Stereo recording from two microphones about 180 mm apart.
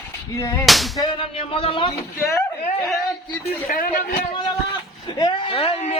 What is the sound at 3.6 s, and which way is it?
Speech, 50° left (ahead or behind).